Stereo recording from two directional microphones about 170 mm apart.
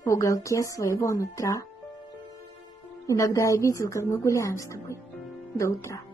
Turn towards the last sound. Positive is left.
turn(degrees=15)  # may be behind; listen again after turning